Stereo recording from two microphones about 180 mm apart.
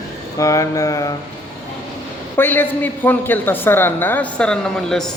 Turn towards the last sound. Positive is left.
turn(degrees=5)  # may be behind; listen again after turning